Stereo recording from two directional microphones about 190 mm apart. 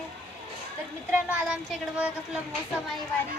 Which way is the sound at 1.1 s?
5° right (ahead or behind).